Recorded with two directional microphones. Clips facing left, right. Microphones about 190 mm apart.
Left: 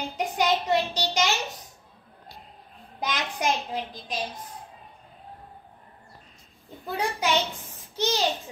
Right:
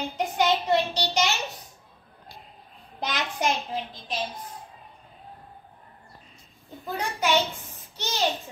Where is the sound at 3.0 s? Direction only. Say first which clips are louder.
Even; 15° left (ahead or behind).